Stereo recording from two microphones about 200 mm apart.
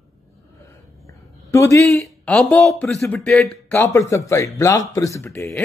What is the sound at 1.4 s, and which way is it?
A man's voice, 15° left (ahead or behind).